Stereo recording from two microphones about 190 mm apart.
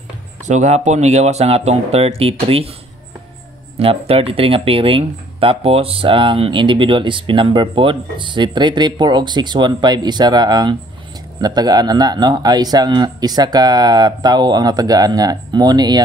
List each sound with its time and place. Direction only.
0.5 s speech: 40° right (ahead or behind)
3.8 s speech: 30° right (ahead or behind)